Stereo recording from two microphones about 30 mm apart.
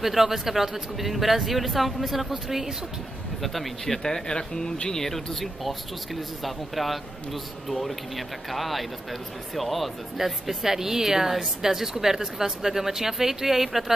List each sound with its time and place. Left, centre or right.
0.0 s a man's voice: centre
3.8 s speech: centre
5.0 s a man's voice: centre
8.5 s a man's voice: centre